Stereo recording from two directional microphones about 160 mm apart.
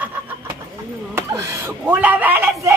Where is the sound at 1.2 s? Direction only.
20° right (ahead or behind).